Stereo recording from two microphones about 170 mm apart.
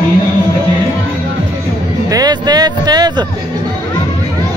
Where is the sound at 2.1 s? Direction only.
25° right (ahead or behind).